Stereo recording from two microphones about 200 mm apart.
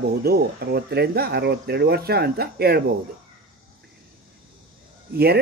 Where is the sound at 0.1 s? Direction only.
50° right (ahead or behind).